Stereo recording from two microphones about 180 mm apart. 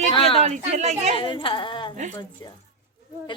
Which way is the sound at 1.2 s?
30° left (ahead or behind).